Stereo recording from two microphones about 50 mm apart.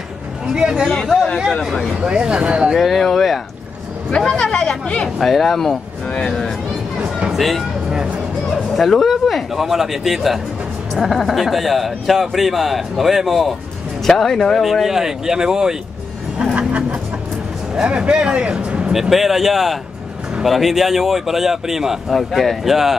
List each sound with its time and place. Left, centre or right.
0.5 s speech: centre
1.0 s speech: centre
2.0 s speech: centre
2.7 s speech: centre
4.4 s speech: centre
5.0 s speech: centre
6.2 s a sound: centre
7.0 s a sound: centre
7.3 s speech: centre
14.0 s speech: centre
17.8 s speech: right
18.9 s speech: centre